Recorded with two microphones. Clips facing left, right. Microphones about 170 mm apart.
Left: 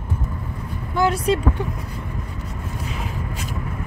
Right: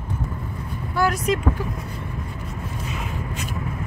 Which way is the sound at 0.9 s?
25° left (ahead or behind).